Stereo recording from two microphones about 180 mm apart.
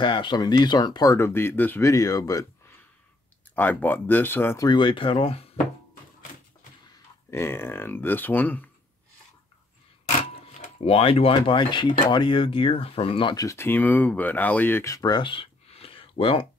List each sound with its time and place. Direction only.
0.0 s speech: 25° left (ahead or behind)
3.5 s speech: 10° left (ahead or behind)
4.6 s speech: 25° left (ahead or behind)
6.9 s speech: 15° left (ahead or behind)
10.9 s speech: 30° left (ahead or behind)